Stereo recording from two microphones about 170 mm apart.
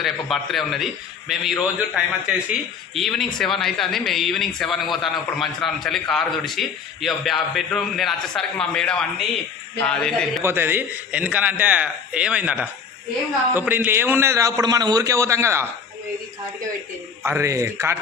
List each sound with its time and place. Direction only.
0.0 s a man's voice: centre (ahead or behind)
10.4 s a man's voice: 15° right (ahead or behind)
17.2 s a man's voice: 15° right (ahead or behind)